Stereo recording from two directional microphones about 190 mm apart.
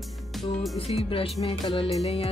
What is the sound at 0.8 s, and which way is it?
Music, 30° left (ahead or behind).